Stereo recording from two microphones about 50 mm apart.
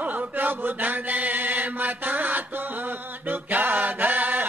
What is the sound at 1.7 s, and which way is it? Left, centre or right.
Mantra, right.